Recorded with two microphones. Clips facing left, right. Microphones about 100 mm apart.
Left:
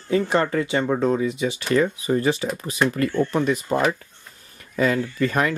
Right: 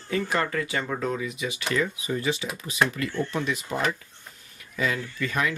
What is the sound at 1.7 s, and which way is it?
Speech, 45° left (ahead or behind).